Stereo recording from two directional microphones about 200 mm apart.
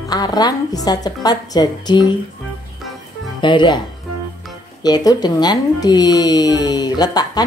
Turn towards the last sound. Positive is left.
turn(degrees=20)  # may be behind; listen again after turning